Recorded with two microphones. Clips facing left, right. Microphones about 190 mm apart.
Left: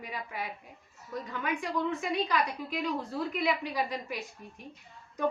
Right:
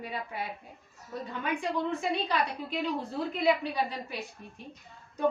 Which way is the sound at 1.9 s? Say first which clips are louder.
Even; 30° right (ahead or behind).